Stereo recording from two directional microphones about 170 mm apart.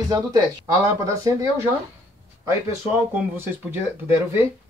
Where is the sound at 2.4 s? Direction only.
10° right (ahead or behind).